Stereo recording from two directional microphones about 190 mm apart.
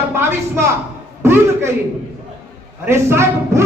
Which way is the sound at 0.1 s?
10° right (ahead or behind).